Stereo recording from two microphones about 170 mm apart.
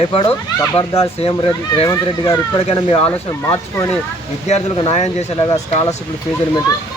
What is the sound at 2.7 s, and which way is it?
Speech, 35° left (ahead or behind).